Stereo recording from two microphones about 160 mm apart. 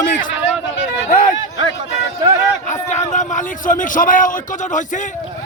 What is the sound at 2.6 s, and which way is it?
A man's voice, 50° left (ahead or behind).